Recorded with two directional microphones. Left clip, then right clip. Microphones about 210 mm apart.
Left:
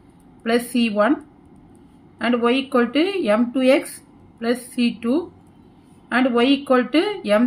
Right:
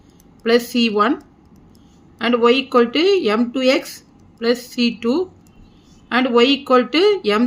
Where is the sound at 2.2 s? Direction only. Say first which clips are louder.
Right 5 dB; 50° right (ahead or behind).